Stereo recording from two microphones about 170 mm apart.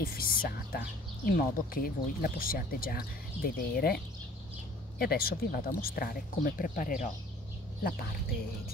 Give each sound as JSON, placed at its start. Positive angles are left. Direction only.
{"t": 0.0, "sound": "speech", "side_deg": 60}